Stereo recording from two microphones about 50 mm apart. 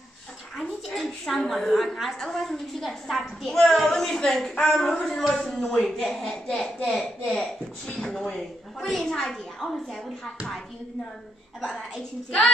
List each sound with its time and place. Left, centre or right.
0.6 s a woman's voice: centre
7.3 s a woman's voice: centre
8.0 s a woman's voice: centre